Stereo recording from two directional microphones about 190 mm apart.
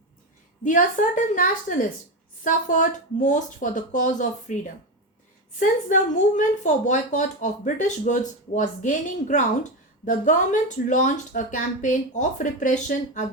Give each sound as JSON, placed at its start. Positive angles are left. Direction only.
{"t": 0.6, "sound": "a woman's voice", "side_deg": 45}